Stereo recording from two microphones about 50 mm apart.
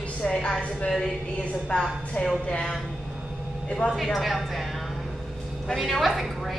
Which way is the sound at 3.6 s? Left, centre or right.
Left.